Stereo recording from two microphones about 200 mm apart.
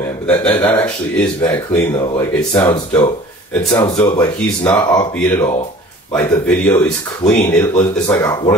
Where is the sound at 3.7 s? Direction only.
20° left (ahead or behind).